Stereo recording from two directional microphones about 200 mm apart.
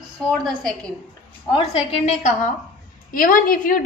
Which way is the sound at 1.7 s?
30° left (ahead or behind).